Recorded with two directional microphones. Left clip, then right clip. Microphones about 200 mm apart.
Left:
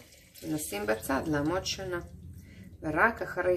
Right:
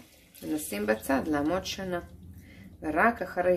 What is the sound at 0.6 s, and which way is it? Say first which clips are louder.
Speech: right 2 dB; 20° right (ahead or behind).